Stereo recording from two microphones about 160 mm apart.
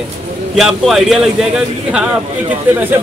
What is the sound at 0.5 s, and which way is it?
A man's voice, centre (ahead or behind).